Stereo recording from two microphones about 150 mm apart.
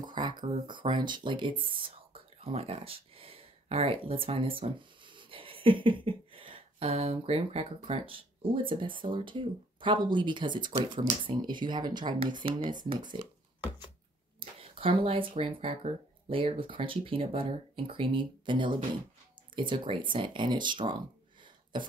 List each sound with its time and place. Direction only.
0.0 s speech: 30° right (ahead or behind)
14.6 s speech: 40° right (ahead or behind)
21.7 s cough: 30° right (ahead or behind)